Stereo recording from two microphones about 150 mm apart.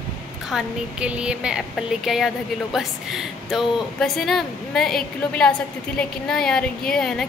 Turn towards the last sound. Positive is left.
turn(degrees=5)  # may be behind; listen again after turning